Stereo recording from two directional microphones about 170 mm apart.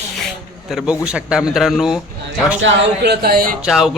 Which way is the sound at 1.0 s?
5° right (ahead or behind).